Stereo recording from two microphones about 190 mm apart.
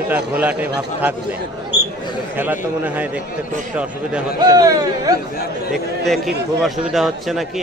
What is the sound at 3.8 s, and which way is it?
Speech, 5° right (ahead or behind).